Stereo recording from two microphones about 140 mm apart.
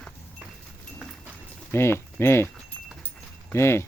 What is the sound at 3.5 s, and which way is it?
Speech, 20° left (ahead or behind).